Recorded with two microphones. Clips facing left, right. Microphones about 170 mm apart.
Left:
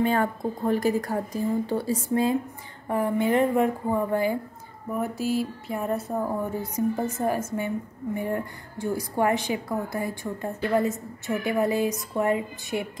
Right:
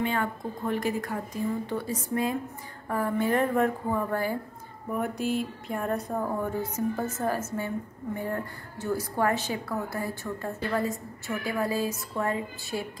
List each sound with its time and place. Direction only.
0.0 s a woman's voice: 40° left (ahead or behind)
2.9 s speech: 20° left (ahead or behind)
4.9 s speech: 5° left (ahead or behind); by 13.0 s 20° left (ahead or behind)